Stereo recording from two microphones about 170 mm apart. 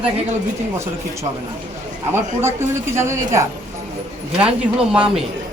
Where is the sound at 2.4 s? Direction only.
15° right (ahead or behind).